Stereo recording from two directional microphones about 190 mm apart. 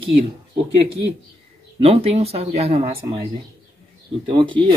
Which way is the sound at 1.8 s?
30° right (ahead or behind).